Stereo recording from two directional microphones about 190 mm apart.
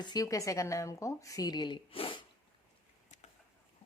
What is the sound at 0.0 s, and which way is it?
A woman's voice, 20° left (ahead or behind).